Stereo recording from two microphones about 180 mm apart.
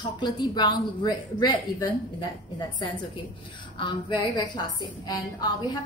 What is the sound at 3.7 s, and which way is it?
A woman's voice, 25° left (ahead or behind).